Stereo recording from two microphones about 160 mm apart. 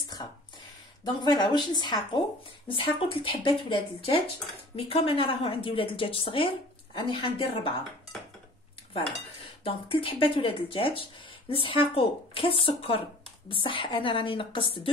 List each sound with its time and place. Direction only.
0.2 s a sound: 25° left (ahead or behind)
1.0 s a woman's voice: 25° left (ahead or behind)
9.7 s speech: 35° left (ahead or behind)